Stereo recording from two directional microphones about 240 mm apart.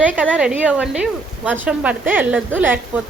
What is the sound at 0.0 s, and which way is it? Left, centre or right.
A woman's voice, centre.